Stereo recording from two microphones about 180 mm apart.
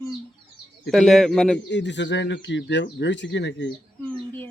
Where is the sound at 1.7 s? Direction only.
80° left.